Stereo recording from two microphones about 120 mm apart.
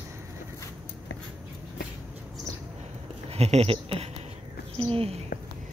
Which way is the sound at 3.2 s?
60° right (ahead or behind).